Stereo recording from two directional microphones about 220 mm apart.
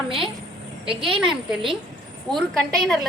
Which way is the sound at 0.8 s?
25° right (ahead or behind).